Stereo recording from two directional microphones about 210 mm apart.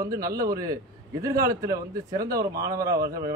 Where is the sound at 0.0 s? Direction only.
15° right (ahead or behind).